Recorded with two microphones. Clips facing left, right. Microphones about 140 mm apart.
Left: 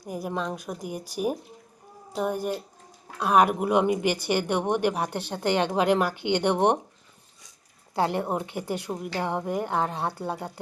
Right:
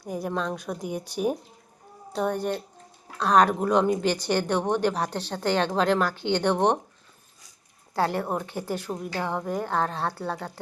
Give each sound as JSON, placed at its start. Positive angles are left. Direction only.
{"t": 0.1, "sound": "a woman's voice", "side_deg": 5}
{"t": 7.9, "sound": "a woman's voice", "side_deg": 20}